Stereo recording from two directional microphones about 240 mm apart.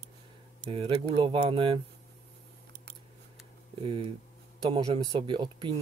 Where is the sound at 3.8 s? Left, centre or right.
Right.